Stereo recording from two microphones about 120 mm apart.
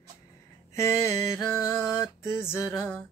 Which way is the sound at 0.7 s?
25° left (ahead or behind).